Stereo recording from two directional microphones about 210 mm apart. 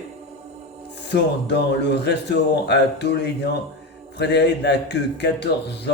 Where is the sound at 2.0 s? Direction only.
55° left (ahead or behind).